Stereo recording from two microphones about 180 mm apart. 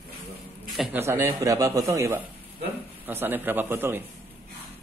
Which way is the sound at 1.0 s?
15° right (ahead or behind).